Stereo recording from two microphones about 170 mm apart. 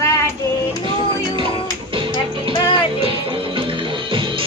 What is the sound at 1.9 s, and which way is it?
Music, 30° right (ahead or behind).